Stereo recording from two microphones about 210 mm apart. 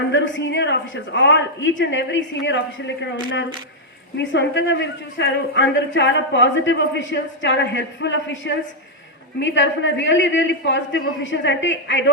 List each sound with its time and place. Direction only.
0.1 s a man's voice: 60° left (ahead or behind)